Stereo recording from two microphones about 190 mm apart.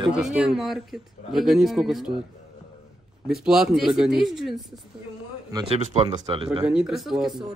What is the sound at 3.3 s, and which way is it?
Speech, centre (ahead or behind).